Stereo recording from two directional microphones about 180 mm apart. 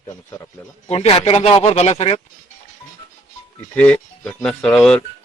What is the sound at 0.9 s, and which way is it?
Speech, 35° left (ahead or behind).